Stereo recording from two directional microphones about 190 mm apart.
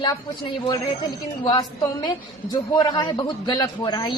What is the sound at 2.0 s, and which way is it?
A woman's voice, 20° left (ahead or behind).